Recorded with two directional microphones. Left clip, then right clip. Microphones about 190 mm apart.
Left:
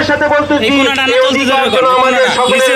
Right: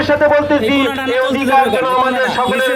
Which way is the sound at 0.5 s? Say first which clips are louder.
Left 4 dB; 20° right (ahead or behind).